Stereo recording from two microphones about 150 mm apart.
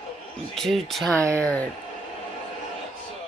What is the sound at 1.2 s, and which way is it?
Speech, 20° right (ahead or behind).